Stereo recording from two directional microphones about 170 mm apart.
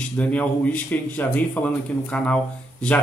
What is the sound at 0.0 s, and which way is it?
Speech, 10° left (ahead or behind).